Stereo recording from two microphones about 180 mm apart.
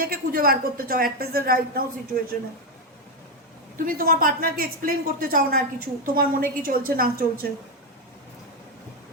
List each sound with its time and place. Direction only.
0.0 s a woman's voice: 55° right (ahead or behind)
3.8 s speech: 55° right (ahead or behind)